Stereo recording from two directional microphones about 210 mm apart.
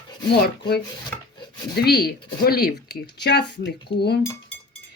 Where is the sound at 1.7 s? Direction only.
50° left (ahead or behind).